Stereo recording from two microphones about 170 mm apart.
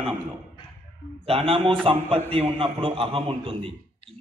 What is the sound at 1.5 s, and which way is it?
A man's voice, 30° right (ahead or behind).